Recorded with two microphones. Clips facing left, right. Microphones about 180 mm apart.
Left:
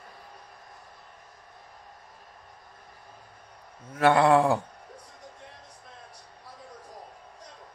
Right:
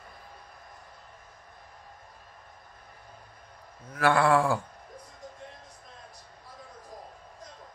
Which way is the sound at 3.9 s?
25° left (ahead or behind).